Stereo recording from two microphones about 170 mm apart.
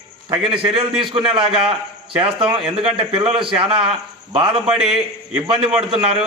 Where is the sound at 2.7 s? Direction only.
35° right (ahead or behind).